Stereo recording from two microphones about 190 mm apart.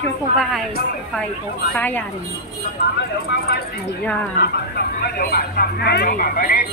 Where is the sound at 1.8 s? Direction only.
10° left (ahead or behind).